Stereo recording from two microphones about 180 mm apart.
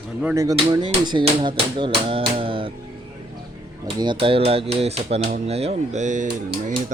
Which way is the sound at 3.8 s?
30° right (ahead or behind).